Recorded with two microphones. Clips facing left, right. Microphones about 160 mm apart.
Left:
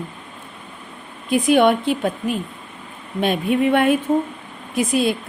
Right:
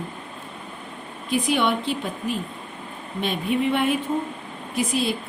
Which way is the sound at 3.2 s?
55° left (ahead or behind).